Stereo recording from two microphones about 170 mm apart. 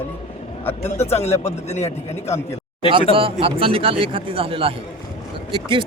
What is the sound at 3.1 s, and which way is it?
Speech, 30° right (ahead or behind).